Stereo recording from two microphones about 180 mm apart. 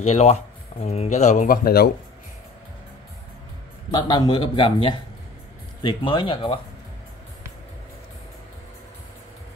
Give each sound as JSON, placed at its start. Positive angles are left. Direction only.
{"t": 0.0, "sound": "speech", "side_deg": 35}
{"t": 3.9, "sound": "a man's voice", "side_deg": 25}
{"t": 5.8, "sound": "a man's voice", "side_deg": 25}